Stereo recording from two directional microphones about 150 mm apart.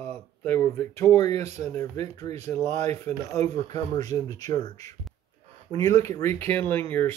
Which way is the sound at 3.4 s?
25° left (ahead or behind).